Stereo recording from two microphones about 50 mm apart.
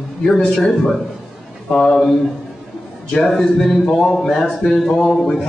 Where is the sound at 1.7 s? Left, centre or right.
Centre.